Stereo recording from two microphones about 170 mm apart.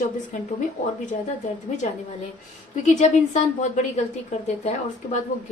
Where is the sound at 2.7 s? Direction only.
45° left (ahead or behind).